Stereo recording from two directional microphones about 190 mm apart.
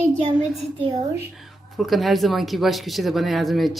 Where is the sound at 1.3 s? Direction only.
Centre (ahead or behind).